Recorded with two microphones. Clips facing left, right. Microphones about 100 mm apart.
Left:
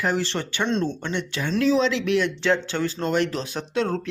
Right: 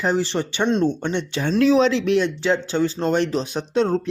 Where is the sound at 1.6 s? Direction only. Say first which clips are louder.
Right 4 dB; 55° right (ahead or behind).